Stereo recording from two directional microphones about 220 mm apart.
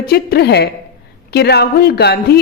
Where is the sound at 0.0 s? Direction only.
45° left (ahead or behind).